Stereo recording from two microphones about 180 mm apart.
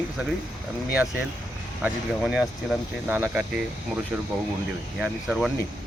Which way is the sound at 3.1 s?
10° right (ahead or behind).